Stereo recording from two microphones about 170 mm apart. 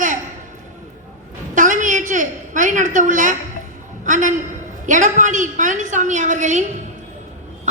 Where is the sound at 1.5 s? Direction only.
50° right (ahead or behind).